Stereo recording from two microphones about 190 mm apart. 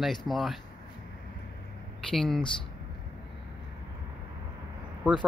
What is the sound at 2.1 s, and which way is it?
Speech, centre (ahead or behind).